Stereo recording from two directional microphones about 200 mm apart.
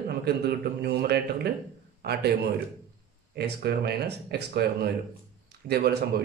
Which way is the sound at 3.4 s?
55° right (ahead or behind).